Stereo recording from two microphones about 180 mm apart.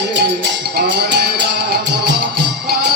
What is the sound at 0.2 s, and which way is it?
Music, 65° right (ahead or behind).